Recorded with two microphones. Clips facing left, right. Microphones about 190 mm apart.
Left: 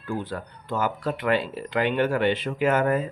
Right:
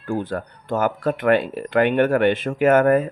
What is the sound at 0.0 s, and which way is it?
Speech, 50° right (ahead or behind).